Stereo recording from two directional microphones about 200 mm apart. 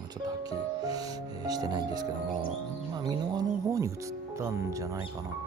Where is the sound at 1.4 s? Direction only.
20° right (ahead or behind).